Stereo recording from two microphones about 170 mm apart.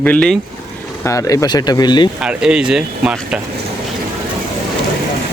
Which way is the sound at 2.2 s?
5° right (ahead or behind).